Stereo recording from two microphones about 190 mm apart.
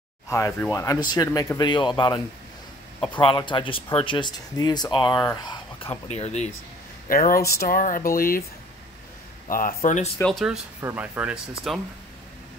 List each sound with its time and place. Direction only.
0.3 s speech: 15° left (ahead or behind)
6.0 s speech: 35° left (ahead or behind)
7.1 s speech: 50° left (ahead or behind)
9.5 s speech: 45° left (ahead or behind)
10.2 s speech: centre (ahead or behind)